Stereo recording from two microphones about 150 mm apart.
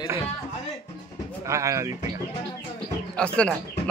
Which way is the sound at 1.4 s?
20° right (ahead or behind).